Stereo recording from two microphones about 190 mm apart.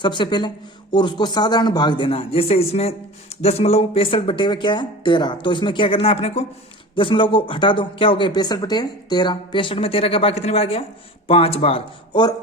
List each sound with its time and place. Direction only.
0.0 s speech: 25° left (ahead or behind)